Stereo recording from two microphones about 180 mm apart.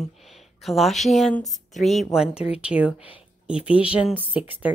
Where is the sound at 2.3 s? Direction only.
30° left (ahead or behind).